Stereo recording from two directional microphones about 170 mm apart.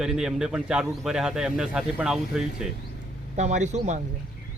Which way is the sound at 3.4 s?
45° right (ahead or behind).